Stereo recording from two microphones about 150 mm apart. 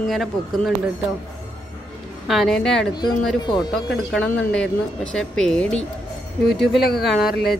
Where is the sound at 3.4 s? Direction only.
30° left (ahead or behind).